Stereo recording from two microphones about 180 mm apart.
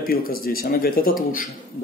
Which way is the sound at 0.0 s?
55° left (ahead or behind).